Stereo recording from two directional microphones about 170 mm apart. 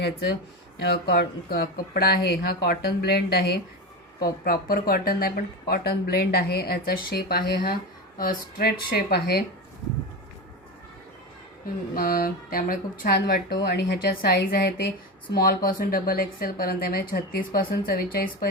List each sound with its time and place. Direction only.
0.9 s speech: 70° left (ahead or behind)
11.9 s speech: 60° left (ahead or behind)